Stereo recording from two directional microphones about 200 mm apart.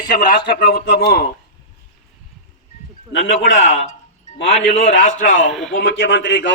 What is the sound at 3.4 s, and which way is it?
Speech, 70° left (ahead or behind).